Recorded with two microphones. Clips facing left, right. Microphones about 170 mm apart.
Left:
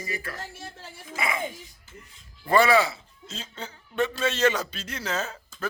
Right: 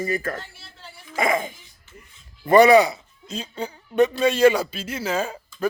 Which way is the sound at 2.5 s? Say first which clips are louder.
Right 7 dB; 20° right (ahead or behind).